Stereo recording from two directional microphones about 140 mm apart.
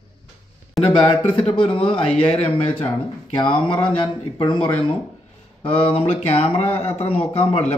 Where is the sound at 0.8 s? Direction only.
35° left (ahead or behind).